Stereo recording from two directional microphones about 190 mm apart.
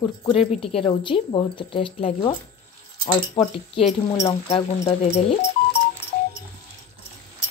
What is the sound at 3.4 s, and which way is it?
A woman's voice, 30° left (ahead or behind).